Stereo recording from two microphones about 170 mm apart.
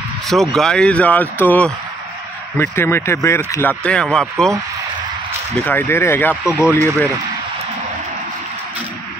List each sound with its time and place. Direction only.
0.3 s speech: centre (ahead or behind); by 3.7 s 15° left (ahead or behind)
3.8 s speech: 5° left (ahead or behind)
5.7 s speech: 15° left (ahead or behind)